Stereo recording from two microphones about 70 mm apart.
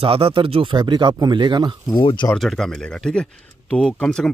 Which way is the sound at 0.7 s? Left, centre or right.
Right.